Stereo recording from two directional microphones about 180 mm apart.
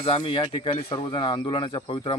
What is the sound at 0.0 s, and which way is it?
Speech, 30° left (ahead or behind).